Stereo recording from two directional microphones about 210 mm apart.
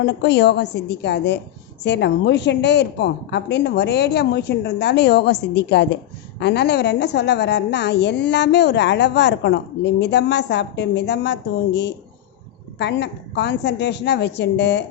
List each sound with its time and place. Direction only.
0.0 s a woman's voice: 55° left (ahead or behind)